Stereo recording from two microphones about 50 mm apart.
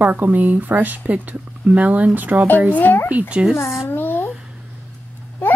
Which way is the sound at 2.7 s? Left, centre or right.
Left.